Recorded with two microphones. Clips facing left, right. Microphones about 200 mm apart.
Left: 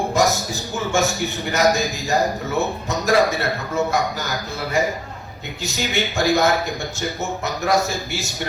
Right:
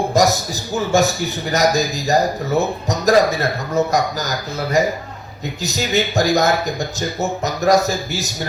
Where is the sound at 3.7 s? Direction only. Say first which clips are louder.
Right 4 dB; 40° right (ahead or behind).